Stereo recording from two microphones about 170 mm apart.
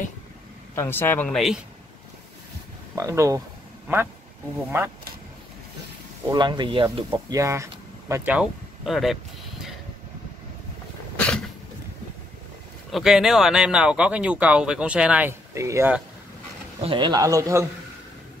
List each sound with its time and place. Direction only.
0.7 s speech: 15° left (ahead or behind)
3.0 s a man's voice: 20° right (ahead or behind)
6.3 s speech: 25° right (ahead or behind); by 9.2 s centre (ahead or behind)
11.1 s a sound: 5° left (ahead or behind)
12.9 s speech: centre (ahead or behind)
16.8 s a man's voice: 30° right (ahead or behind)